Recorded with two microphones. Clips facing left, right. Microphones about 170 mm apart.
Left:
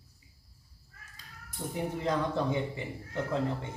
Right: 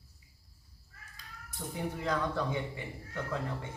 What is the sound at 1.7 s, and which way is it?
A man's voice, 25° left (ahead or behind).